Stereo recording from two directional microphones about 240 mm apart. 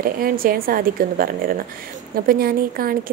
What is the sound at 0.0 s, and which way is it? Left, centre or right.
Speech, right.